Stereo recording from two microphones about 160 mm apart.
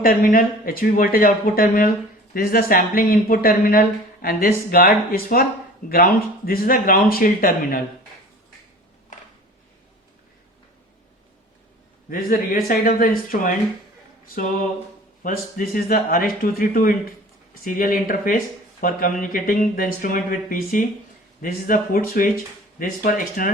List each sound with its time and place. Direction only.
0.0 s speech: 60° left (ahead or behind)
12.1 s speech: 60° left (ahead or behind)
15.2 s speech: 60° left (ahead or behind)